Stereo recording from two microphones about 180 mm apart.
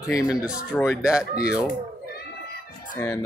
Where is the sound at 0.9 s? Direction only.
5° right (ahead or behind).